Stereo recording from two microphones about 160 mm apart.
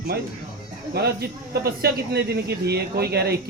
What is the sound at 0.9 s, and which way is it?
Speech, 90° right.